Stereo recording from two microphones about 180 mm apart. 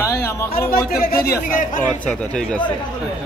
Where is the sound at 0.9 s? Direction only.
55° left (ahead or behind).